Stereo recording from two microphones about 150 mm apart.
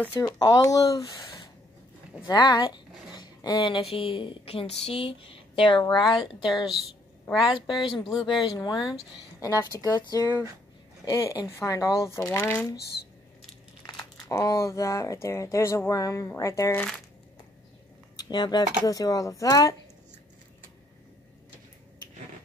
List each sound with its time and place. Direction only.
0.2 s speech: 25° left (ahead or behind)
14.3 s speech: 20° left (ahead or behind)
18.1 s speech: 30° left (ahead or behind)